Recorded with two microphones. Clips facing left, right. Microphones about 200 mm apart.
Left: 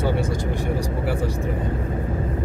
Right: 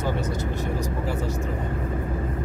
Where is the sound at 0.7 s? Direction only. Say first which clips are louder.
Left 3 dB; 15° left (ahead or behind).